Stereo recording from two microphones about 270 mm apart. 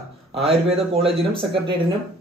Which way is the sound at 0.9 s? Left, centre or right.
Right.